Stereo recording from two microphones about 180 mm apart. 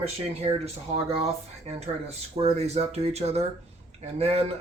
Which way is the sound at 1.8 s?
35° right (ahead or behind).